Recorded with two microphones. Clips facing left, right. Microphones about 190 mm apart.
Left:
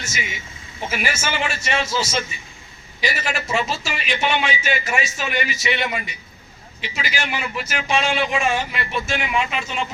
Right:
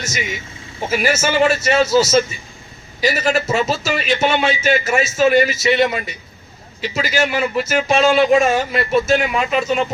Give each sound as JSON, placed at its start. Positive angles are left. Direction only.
{"t": 0.9, "sound": "speech", "side_deg": -40}